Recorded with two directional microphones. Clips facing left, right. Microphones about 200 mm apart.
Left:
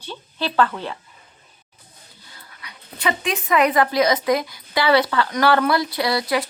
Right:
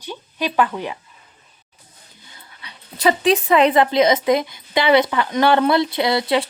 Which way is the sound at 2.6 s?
35° right (ahead or behind).